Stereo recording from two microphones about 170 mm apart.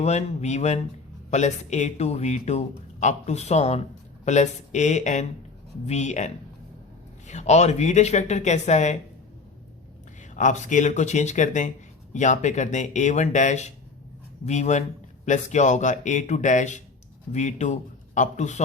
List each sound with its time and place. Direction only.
0.0 s speech: 40° left (ahead or behind)
10.3 s speech: 45° left (ahead or behind)